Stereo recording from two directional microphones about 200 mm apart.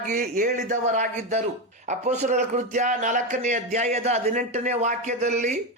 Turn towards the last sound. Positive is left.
turn(degrees=-35)  # may be behind; listen again after turning